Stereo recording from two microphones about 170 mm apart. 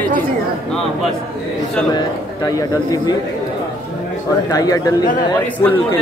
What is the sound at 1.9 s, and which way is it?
Speech, 25° left (ahead or behind).